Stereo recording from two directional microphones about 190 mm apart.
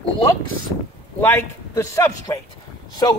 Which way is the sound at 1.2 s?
15° left (ahead or behind).